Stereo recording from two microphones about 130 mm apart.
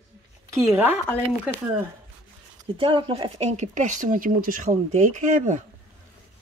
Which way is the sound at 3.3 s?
60° right (ahead or behind).